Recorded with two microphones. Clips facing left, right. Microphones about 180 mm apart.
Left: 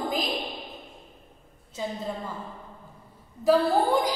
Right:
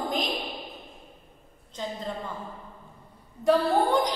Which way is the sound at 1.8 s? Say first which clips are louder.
Left 2 dB; 5° left (ahead or behind).